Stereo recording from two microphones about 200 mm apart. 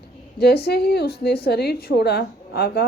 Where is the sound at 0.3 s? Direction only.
55° left (ahead or behind).